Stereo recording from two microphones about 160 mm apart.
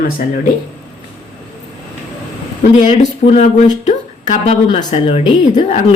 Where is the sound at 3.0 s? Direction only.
45° left (ahead or behind).